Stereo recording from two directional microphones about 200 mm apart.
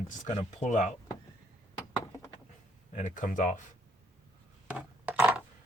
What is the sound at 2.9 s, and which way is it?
Speech, 40° left (ahead or behind).